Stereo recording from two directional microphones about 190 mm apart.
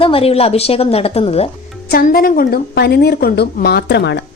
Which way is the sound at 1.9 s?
50° left (ahead or behind).